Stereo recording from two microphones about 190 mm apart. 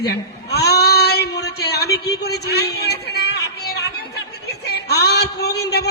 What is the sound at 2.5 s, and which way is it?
A man's voice, 60° left (ahead or behind).